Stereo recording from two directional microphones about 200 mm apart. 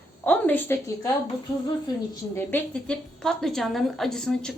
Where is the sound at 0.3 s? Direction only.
10° left (ahead or behind).